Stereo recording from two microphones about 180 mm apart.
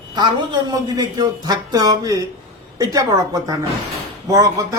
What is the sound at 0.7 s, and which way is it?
A man's voice, 20° right (ahead or behind).